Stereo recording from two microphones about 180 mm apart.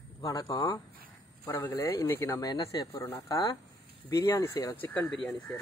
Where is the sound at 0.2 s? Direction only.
20° left (ahead or behind).